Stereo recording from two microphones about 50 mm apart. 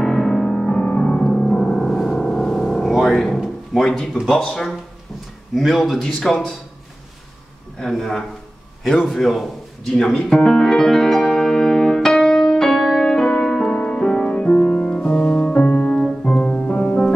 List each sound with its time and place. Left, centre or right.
0.0 s piano: centre
1.3 s music: centre
4.4 s speech: centre
5.5 s speech: centre
7.8 s speech: centre
9.1 s music: centre
14.2 s music: centre